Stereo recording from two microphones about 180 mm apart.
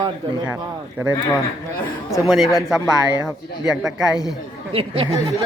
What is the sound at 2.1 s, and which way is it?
Speech, centre (ahead or behind).